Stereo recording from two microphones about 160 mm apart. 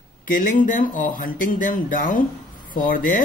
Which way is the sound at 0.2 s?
55° left (ahead or behind).